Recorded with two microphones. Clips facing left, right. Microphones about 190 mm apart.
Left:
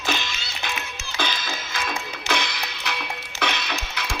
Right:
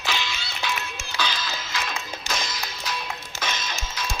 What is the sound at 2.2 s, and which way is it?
Music, 65° left (ahead or behind).